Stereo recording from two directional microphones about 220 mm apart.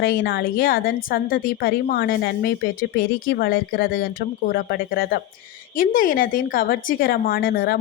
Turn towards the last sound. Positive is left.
turn(degrees=45)  # may be behind; listen again after turning